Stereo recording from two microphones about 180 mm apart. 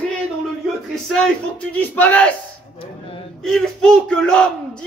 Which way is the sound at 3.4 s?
5° left (ahead or behind).